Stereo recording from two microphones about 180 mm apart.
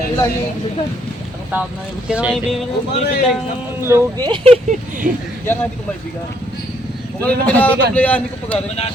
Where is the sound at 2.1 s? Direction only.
5° right (ahead or behind).